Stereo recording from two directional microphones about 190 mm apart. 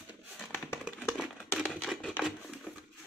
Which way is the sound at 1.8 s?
5° right (ahead or behind).